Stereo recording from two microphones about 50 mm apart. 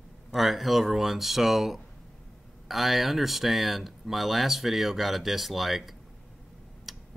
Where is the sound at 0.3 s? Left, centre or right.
Centre.